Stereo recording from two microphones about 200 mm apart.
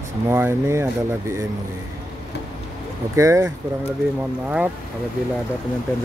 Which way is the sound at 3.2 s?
15° right (ahead or behind).